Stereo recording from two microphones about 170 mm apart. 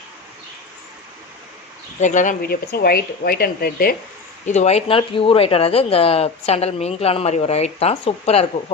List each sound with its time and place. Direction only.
2.0 s speech: 45° left (ahead or behind)
4.4 s speech: 40° left (ahead or behind)